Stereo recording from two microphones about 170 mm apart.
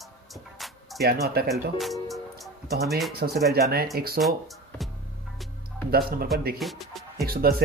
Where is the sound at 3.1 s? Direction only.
65° right (ahead or behind).